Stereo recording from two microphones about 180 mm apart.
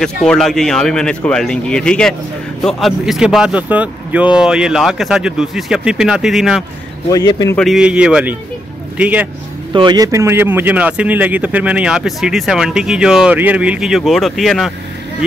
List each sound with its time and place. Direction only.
0.0 s speech: centre (ahead or behind)
7.1 s speech: 20° left (ahead or behind)
7.5 s a man's voice: centre (ahead or behind)
9.7 s speech: 25° right (ahead or behind); by 14.7 s centre (ahead or behind)